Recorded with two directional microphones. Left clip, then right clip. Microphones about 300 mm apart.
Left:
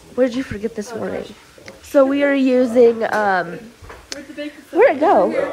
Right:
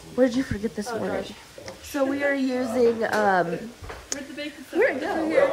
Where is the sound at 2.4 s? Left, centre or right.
Centre.